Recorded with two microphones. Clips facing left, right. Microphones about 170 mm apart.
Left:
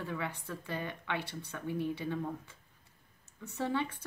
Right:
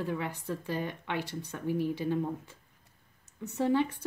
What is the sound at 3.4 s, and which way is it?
Speech, 20° right (ahead or behind).